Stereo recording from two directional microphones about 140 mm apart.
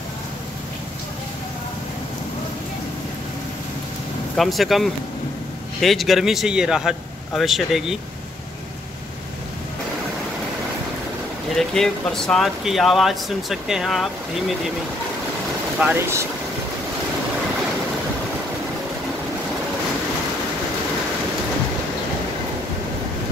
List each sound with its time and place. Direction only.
4.4 s speech: centre (ahead or behind)
11.5 s speech: 5° left (ahead or behind)
15.8 s speech: 15° right (ahead or behind)